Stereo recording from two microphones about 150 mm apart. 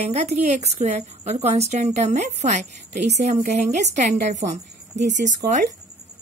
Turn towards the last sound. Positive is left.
turn(degrees=-55)  # may be behind; listen again after turning